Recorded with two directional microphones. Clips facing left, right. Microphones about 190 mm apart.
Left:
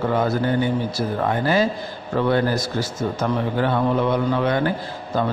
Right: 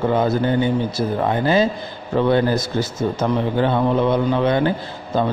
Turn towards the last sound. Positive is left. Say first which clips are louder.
# right 2 dB
turn(degrees=-25)  # may be behind; listen again after turning